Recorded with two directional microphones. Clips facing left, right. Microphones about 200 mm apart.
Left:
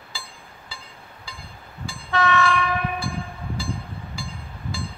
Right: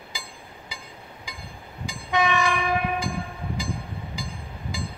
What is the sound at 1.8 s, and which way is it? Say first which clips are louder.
Train: left 1 dB; 15° right (ahead or behind).